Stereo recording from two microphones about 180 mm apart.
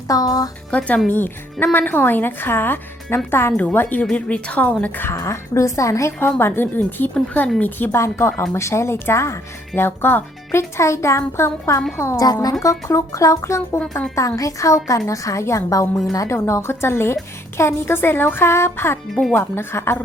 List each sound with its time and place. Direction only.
0.1 s speech: 20° left (ahead or behind)
0.7 s speech: 5° left (ahead or behind)
19.1 s speech: centre (ahead or behind)
19.4 s speech: 10° left (ahead or behind)